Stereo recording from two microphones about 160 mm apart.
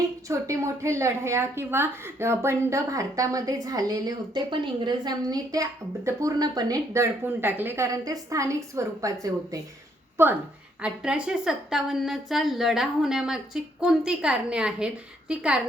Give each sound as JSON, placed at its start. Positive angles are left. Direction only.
{"t": 0.3, "sound": "a woman's voice", "side_deg": -20}